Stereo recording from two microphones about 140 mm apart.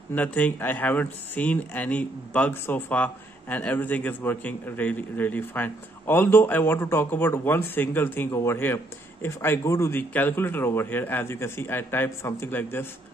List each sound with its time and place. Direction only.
0.1 s speech: 10° left (ahead or behind)